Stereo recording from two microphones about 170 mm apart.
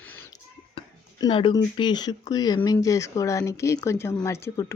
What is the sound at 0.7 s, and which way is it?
Speech, 30° left (ahead or behind).